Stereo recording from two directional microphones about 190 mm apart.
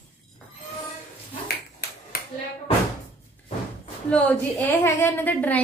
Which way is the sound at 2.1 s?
50° left (ahead or behind).